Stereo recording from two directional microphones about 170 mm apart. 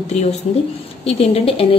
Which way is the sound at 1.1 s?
35° left (ahead or behind).